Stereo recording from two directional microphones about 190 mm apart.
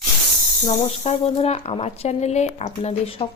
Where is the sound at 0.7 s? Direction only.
35° left (ahead or behind).